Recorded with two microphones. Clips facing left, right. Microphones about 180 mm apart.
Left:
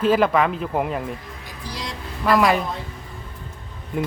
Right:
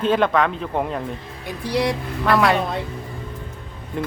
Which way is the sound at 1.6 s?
65° right (ahead or behind).